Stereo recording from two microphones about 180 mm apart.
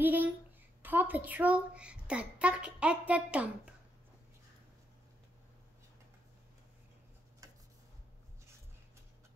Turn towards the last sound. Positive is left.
turn(degrees=-20)  # may be behind; listen again after turning